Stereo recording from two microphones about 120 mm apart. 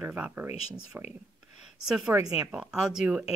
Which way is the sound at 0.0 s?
15° right (ahead or behind).